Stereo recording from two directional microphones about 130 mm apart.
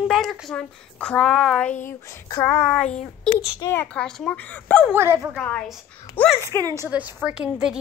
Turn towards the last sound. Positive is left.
turn(degrees=-5)  # may be behind; listen again after turning